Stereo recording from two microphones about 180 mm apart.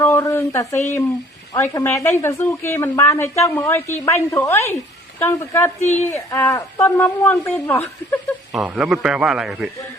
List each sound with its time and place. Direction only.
0.0 s a woman's voice: 15° left (ahead or behind)
5.8 s a woman's voice: 40° left (ahead or behind)
6.1 s a woman's voice: 15° left (ahead or behind)
8.5 s a man's voice: 5° right (ahead or behind)